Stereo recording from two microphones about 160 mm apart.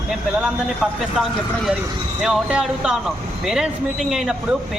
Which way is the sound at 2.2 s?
5° right (ahead or behind).